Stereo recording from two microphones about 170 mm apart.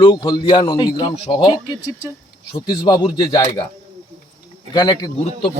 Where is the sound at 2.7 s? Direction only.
25° left (ahead or behind).